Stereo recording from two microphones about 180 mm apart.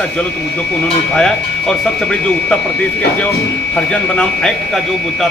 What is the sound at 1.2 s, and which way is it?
Speech, centre (ahead or behind).